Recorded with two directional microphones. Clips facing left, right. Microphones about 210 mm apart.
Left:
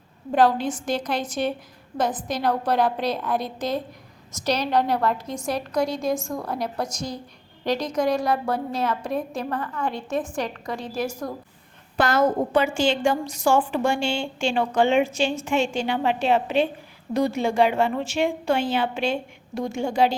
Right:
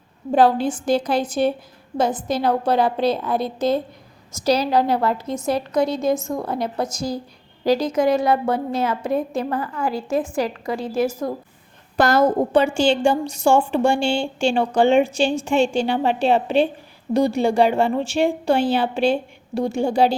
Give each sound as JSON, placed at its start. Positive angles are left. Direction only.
{"t": 0.3, "sound": "a woman's voice", "side_deg": -30}
{"t": 4.4, "sound": "a woman's voice", "side_deg": -5}
{"t": 11.9, "sound": "a woman's voice", "side_deg": -40}